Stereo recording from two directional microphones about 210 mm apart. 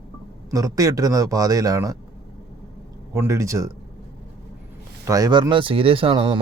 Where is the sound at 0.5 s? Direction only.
15° right (ahead or behind).